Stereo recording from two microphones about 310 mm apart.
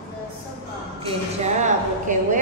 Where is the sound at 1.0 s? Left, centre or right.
Right.